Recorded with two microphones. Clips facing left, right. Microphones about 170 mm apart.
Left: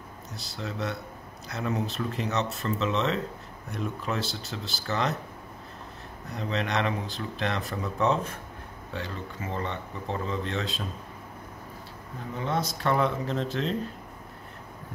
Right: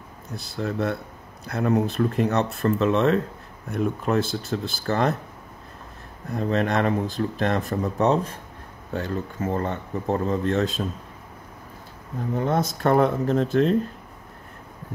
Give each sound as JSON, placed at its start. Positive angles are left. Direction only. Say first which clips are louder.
{"t": 0.3, "sound": "speech", "louder": "right 8 dB", "side_deg": -55}
{"t": 6.3, "sound": "speech", "louder": "right 6 dB", "side_deg": -50}
{"t": 8.9, "sound": "speech", "louder": "right 8 dB", "side_deg": -45}
{"t": 12.4, "sound": "speech", "louder": "right 5 dB", "side_deg": -50}